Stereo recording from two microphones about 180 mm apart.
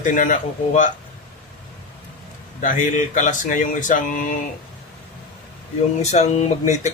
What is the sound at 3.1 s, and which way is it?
Speech, 45° left (ahead or behind).